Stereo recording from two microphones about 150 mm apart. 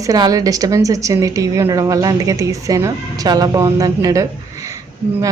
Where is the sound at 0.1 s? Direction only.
25° right (ahead or behind).